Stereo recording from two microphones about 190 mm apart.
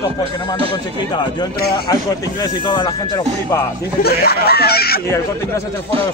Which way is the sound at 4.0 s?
55° left (ahead or behind).